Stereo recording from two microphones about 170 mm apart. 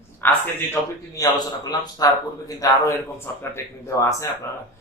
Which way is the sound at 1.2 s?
20° left (ahead or behind).